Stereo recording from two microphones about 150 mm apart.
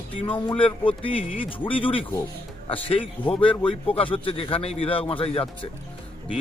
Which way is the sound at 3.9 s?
35° left (ahead or behind).